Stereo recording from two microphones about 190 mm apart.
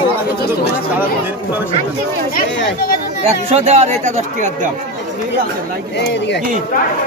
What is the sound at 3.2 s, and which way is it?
Speech, 35° right (ahead or behind).